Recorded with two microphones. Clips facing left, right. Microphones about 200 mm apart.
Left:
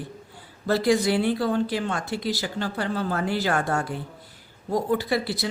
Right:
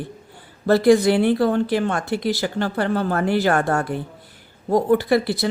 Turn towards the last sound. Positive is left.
turn(degrees=-55)  # may be behind; listen again after turning